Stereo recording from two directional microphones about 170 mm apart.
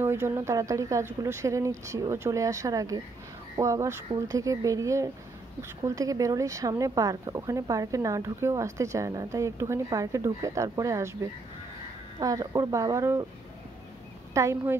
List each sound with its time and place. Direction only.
0.0 s speech: 15° right (ahead or behind)
14.3 s speech: 15° right (ahead or behind)